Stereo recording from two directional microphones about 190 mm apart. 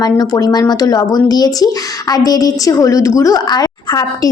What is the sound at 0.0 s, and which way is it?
A woman's voice, 20° left (ahead or behind).